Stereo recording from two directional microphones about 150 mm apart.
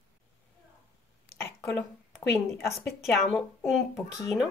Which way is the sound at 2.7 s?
Centre (ahead or behind).